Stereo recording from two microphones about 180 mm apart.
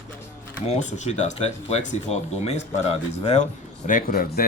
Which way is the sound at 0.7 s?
40° left (ahead or behind).